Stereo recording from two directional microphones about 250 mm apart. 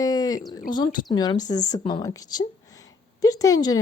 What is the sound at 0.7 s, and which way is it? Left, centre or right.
Speech, centre.